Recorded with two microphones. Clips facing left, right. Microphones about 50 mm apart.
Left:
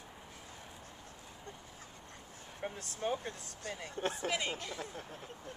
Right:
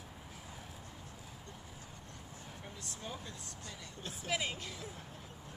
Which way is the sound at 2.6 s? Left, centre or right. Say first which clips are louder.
Left 11 dB; left.